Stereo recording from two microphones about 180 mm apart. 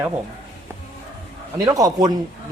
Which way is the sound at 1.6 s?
20° right (ahead or behind).